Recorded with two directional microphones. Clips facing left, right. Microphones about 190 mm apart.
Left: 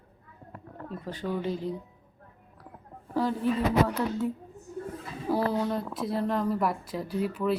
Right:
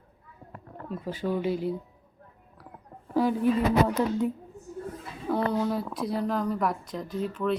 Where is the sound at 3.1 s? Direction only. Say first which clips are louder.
Right 3 dB; 15° right (ahead or behind).